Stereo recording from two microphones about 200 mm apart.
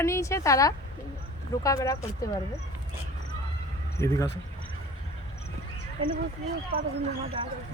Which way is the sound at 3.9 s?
15° left (ahead or behind).